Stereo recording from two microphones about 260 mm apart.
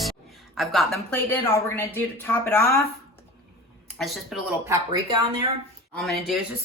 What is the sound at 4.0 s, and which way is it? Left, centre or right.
Speech, centre.